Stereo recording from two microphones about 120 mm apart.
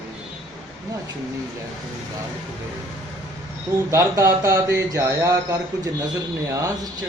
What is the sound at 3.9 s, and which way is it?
Speech, 25° right (ahead or behind).